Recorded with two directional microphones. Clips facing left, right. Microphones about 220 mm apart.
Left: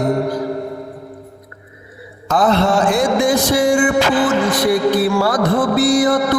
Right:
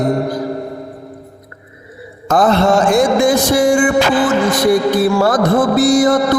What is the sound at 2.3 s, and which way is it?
Music, 45° right (ahead or behind).